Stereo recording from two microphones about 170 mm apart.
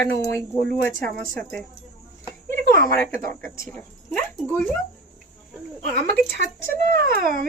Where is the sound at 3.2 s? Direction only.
55° right (ahead or behind).